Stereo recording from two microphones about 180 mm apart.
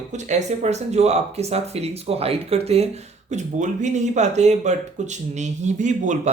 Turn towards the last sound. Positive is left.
turn(degrees=-45)  # may be behind; listen again after turning